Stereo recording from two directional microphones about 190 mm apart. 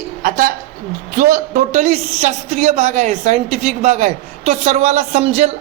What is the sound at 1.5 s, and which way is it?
A woman's voice, 35° right (ahead or behind).